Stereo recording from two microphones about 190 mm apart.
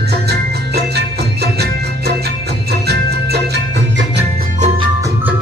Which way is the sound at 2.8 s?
60° right (ahead or behind).